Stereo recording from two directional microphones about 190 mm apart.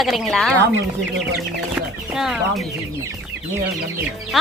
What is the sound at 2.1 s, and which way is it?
Speech, centre (ahead or behind).